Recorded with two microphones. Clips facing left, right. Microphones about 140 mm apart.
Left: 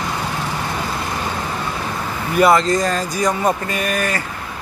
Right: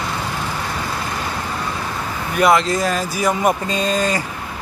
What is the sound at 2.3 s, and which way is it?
Speech, centre (ahead or behind).